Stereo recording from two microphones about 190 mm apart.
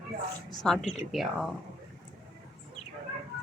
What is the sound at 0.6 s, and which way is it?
Speech, centre (ahead or behind).